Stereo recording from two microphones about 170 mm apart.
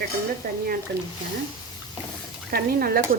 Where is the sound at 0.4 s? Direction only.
60° right (ahead or behind).